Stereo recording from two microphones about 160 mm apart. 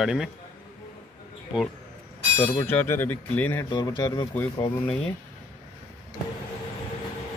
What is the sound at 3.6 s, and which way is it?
Speech, 25° left (ahead or behind).